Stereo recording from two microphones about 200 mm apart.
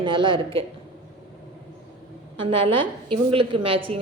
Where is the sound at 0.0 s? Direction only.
25° right (ahead or behind).